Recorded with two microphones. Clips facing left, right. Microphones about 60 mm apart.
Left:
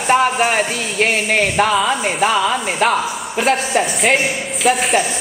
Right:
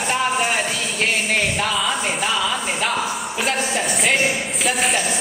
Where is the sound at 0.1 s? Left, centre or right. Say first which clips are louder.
Left 7 dB; left.